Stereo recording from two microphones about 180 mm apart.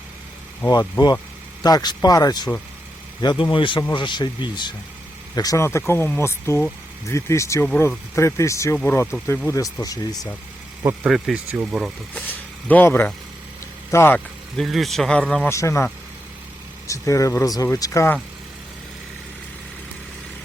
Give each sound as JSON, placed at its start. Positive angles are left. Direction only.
{"t": 0.7, "sound": "speech", "side_deg": 25}
{"t": 10.8, "sound": "speech", "side_deg": -5}
{"t": 12.1, "sound": "speech", "side_deg": 10}
{"t": 14.5, "sound": "speech", "side_deg": 0}
{"t": 15.4, "sound": "speech", "side_deg": 15}